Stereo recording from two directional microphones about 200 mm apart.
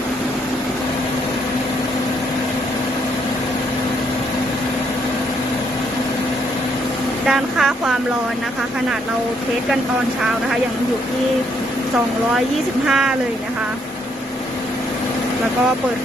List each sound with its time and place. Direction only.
7.3 s vehicle: centre (ahead or behind)
12.8 s speech: 5° right (ahead or behind)